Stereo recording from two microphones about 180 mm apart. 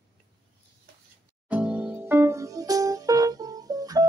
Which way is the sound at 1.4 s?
5° right (ahead or behind).